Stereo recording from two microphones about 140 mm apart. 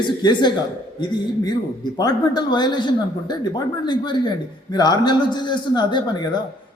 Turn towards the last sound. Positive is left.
turn(degrees=30)  # may be behind; listen again after turning